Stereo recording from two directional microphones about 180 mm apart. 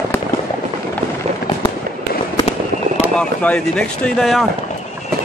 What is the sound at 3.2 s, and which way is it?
Speech, 5° left (ahead or behind).